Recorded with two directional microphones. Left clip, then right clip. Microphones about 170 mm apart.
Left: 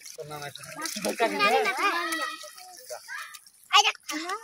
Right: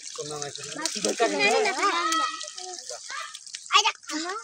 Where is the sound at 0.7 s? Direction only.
50° right (ahead or behind).